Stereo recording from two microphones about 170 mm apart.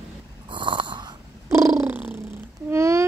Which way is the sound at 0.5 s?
30° right (ahead or behind).